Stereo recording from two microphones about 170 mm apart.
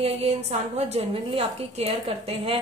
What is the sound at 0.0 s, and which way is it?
A woman's voice, 35° right (ahead or behind).